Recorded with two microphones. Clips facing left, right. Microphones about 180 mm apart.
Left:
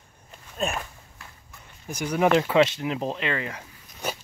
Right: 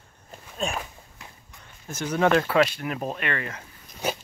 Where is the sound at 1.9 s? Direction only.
15° left (ahead or behind).